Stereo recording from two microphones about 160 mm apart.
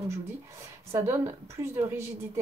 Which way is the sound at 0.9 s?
15° right (ahead or behind).